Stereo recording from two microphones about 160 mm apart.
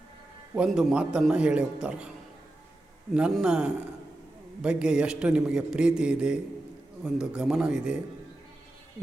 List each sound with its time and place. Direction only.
0.5 s a man's voice: 5° right (ahead or behind)
3.2 s a man's voice: 5° right (ahead or behind)